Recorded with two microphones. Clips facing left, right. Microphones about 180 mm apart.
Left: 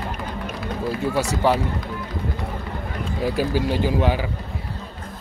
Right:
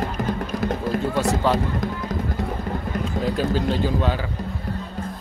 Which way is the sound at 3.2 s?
10° left (ahead or behind).